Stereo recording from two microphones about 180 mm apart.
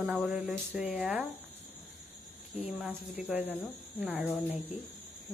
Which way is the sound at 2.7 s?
5° right (ahead or behind).